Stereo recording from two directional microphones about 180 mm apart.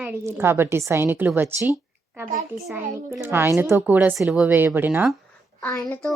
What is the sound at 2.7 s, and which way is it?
Speech, 15° right (ahead or behind).